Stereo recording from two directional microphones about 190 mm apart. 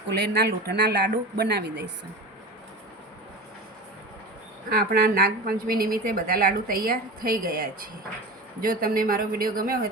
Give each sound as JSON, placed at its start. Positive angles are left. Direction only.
{"t": 0.3, "sound": "speech", "side_deg": -60}
{"t": 4.7, "sound": "a woman's voice", "side_deg": -50}